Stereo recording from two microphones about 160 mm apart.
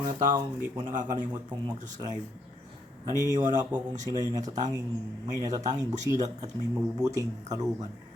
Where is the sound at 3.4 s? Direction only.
25° right (ahead or behind).